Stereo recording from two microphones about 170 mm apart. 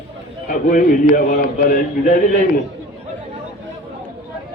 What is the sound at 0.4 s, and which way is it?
A man's voice, 50° left (ahead or behind).